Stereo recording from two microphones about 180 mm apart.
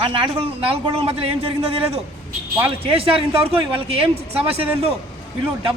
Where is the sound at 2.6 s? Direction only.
30° right (ahead or behind).